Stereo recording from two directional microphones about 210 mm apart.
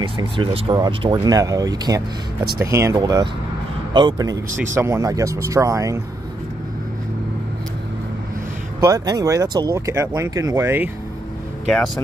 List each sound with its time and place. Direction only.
0.0 s speech: 25° right (ahead or behind)
8.8 s speech: 15° right (ahead or behind)